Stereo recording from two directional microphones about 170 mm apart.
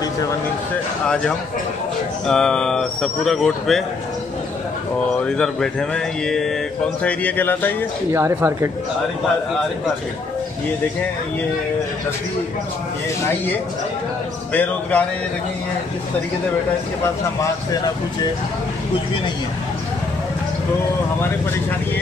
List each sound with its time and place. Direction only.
1.0 s speech: 5° left (ahead or behind)
5.2 s speech: 5° left (ahead or behind)
8.1 s speech: 15° right (ahead or behind)
14.5 s speech: 10° left (ahead or behind)